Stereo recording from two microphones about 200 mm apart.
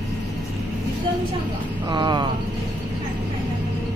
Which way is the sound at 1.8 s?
20° right (ahead or behind).